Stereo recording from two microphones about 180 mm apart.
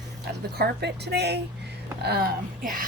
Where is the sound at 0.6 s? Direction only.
65° right (ahead or behind).